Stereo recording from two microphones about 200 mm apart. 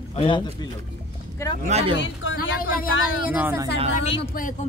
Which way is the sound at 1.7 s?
30° right (ahead or behind).